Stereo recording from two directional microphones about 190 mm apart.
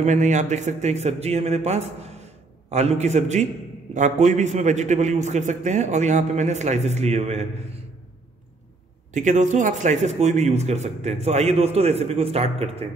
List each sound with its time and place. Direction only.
0.0 s a man's voice: 40° right (ahead or behind)
9.1 s a man's voice: 40° right (ahead or behind)